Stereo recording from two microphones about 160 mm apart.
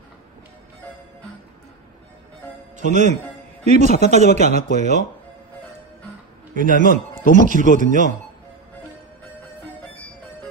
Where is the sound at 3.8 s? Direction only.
60° left (ahead or behind).